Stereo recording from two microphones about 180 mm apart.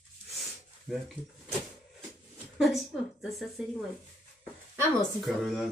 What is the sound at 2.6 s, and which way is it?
Speech, centre (ahead or behind).